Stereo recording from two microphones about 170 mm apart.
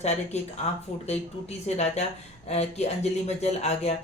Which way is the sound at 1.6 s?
40° left (ahead or behind).